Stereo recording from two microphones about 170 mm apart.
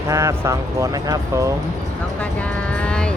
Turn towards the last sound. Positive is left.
turn(degrees=5)  # may be behind; listen again after turning